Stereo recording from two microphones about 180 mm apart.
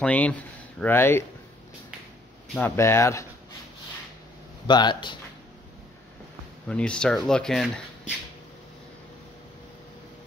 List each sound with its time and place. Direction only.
0.0 s speech: 10° left (ahead or behind)
2.5 s speech: 15° left (ahead or behind)
4.6 s speech: 25° left (ahead or behind)
6.7 s speech: 5° left (ahead or behind)